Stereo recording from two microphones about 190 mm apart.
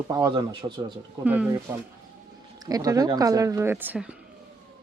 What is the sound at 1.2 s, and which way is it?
Speech, 10° right (ahead or behind).